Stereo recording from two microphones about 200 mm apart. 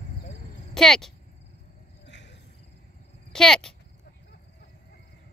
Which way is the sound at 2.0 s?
60° left (ahead or behind).